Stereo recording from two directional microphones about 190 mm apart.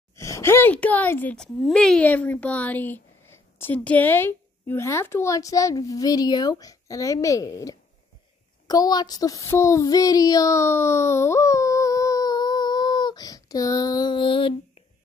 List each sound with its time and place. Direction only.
0.1 s speech: 15° left (ahead or behind)
8.6 s child singing: 20° left (ahead or behind)